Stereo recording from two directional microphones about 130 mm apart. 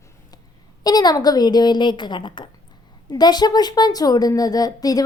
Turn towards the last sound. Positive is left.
turn(degrees=30)  # may be behind; listen again after turning